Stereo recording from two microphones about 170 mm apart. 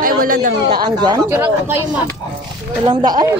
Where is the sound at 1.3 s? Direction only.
10° right (ahead or behind).